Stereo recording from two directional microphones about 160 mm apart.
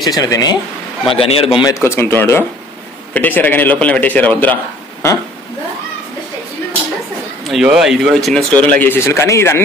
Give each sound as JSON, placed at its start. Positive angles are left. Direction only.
{"t": 0.0, "sound": "speech", "side_deg": 20}
{"t": 1.0, "sound": "speech", "side_deg": 35}
{"t": 1.7, "sound": "a man's voice", "side_deg": 15}
{"t": 7.4, "sound": "speech", "side_deg": 0}